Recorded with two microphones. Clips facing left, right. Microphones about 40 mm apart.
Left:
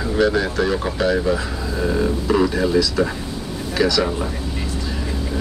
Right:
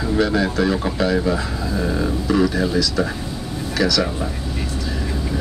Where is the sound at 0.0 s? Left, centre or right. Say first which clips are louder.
Even; centre.